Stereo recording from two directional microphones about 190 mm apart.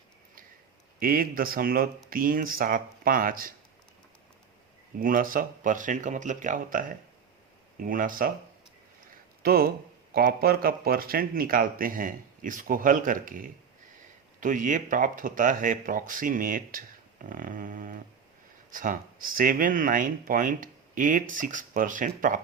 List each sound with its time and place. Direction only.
0.9 s speech: 50° right (ahead or behind)
4.9 s speech: 45° right (ahead or behind)
9.4 s speech: 55° right (ahead or behind)